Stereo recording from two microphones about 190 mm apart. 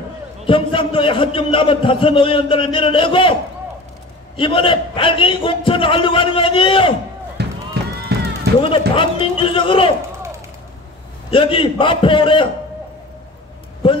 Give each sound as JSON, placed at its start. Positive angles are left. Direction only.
{"t": 0.5, "sound": "a man's voice", "side_deg": 25}
{"t": 4.4, "sound": "a man's voice", "side_deg": 25}
{"t": 7.4, "sound": "a sound", "side_deg": -60}
{"t": 7.8, "sound": "run", "side_deg": -60}
{"t": 8.5, "sound": "a man's voice", "side_deg": -60}
{"t": 8.9, "sound": "a man's voice", "side_deg": 25}
{"t": 11.2, "sound": "a man's voice", "side_deg": 25}